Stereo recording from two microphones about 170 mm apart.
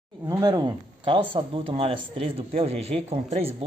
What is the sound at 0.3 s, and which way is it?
Speech, 25° right (ahead or behind).